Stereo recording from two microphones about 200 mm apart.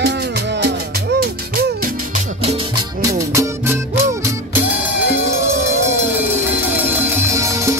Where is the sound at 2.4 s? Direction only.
20° right (ahead or behind).